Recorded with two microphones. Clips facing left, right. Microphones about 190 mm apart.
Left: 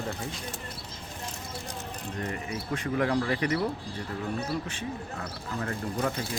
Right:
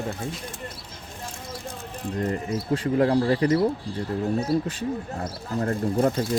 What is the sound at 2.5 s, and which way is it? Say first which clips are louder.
Speech: right 7 dB; 30° right (ahead or behind).